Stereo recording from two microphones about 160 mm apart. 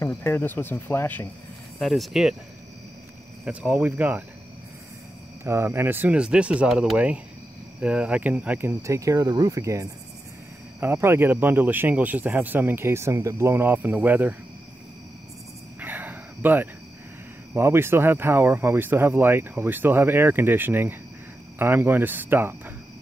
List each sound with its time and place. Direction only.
0.0 s speech: 15° left (ahead or behind)
1.8 s speech: centre (ahead or behind)
3.4 s speech: 5° right (ahead or behind)
5.4 s speech: 15° right (ahead or behind)
15.8 s a sound: 10° right (ahead or behind)
17.6 s speech: 15° right (ahead or behind)